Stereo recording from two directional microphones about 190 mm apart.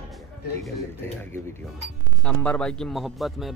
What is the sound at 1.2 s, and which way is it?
A man's voice, 10° left (ahead or behind).